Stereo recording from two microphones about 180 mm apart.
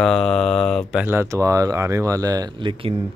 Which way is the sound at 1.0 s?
15° right (ahead or behind).